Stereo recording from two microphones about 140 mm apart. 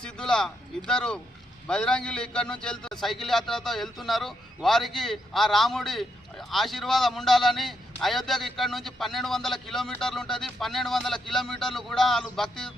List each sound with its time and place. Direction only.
0.0 s a man's voice: 5° left (ahead or behind)